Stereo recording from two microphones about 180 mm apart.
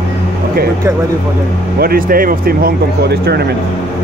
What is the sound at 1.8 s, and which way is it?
Speech, 55° right (ahead or behind).